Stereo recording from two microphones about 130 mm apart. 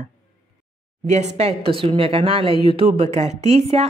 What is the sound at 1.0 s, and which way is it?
Speech, 60° right (ahead or behind).